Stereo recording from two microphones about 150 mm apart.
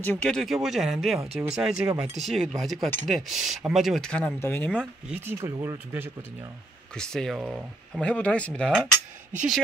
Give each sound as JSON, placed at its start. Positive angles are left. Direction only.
{"t": 0.0, "sound": "speech", "side_deg": 10}
{"t": 4.7, "sound": "speech", "side_deg": -15}
{"t": 7.0, "sound": "speech", "side_deg": 5}